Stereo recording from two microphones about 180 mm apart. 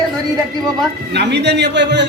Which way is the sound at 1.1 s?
70° right (ahead or behind).